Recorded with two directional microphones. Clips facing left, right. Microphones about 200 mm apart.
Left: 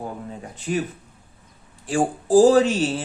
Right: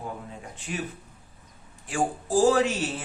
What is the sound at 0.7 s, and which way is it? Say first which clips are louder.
Speech: left 9 dB; 45° left (ahead or behind).